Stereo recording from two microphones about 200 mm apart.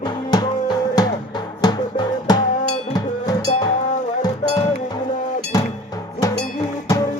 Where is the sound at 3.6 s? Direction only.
35° left (ahead or behind).